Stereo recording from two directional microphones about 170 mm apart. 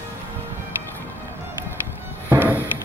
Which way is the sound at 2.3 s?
10° right (ahead or behind).